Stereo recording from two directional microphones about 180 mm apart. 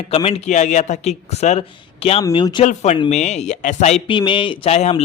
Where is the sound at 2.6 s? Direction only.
35° left (ahead or behind).